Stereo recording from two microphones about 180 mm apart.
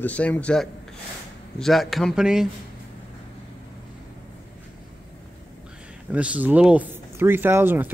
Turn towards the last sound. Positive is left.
turn(degrees=-10)  # may be behind; listen again after turning